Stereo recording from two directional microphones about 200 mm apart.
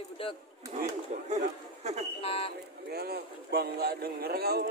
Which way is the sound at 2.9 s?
50° right (ahead or behind).